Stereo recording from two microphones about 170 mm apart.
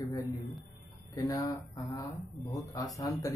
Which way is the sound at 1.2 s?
20° left (ahead or behind).